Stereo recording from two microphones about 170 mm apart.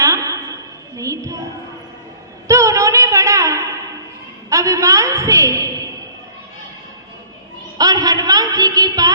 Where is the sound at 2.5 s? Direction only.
20° right (ahead or behind).